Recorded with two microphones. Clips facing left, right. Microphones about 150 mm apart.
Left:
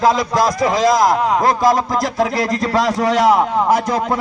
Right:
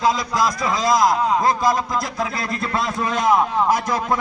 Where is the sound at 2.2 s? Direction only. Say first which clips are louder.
Left 7 dB; 40° left (ahead or behind).